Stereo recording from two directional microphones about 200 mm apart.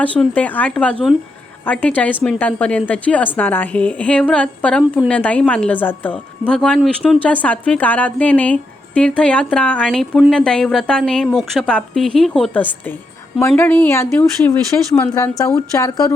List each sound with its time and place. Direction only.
0.0 s a woman's voice: 5° left (ahead or behind)